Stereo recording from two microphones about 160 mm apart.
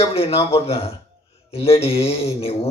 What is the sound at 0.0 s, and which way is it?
Speech, 40° left (ahead or behind).